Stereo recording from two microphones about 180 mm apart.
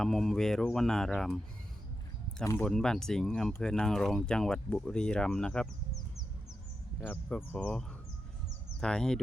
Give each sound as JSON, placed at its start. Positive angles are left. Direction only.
{"t": 0.0, "sound": "speech", "side_deg": 0}
{"t": 2.4, "sound": "speech", "side_deg": 15}
{"t": 2.6, "sound": "speech", "side_deg": 5}
{"t": 7.0, "sound": "speech", "side_deg": 10}